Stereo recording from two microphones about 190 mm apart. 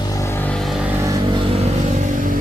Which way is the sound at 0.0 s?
15° left (ahead or behind).